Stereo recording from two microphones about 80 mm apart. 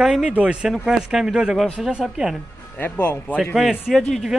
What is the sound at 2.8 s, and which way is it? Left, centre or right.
Speech, left.